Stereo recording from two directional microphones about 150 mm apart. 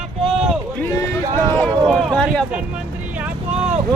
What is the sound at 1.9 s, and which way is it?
Speech, centre (ahead or behind).